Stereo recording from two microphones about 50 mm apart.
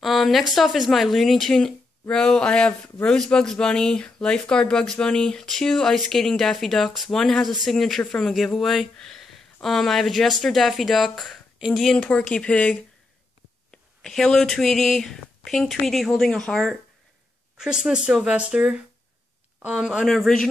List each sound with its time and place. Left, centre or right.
0.0 s speech: centre
1.5 s speech: centre
8.9 s speech: centre
12.0 s speech: left
13.7 s speech: centre
17.6 s speech: centre
20.1 s speech: centre